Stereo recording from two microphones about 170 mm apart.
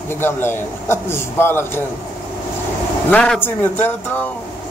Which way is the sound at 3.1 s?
10° left (ahead or behind).